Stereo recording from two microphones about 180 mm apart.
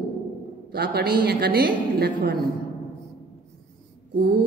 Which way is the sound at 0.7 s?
60° right (ahead or behind).